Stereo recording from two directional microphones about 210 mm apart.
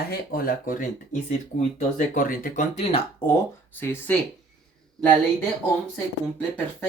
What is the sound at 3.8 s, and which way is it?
Speech, 10° left (ahead or behind).